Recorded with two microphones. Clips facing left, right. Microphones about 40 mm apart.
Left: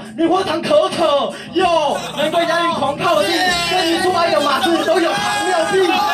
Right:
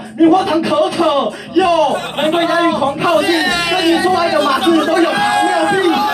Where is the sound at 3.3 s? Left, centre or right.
Centre.